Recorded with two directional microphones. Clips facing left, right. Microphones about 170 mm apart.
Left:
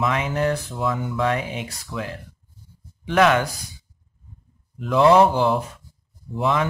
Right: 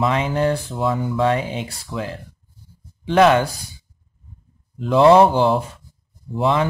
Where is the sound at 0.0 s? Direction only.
30° right (ahead or behind).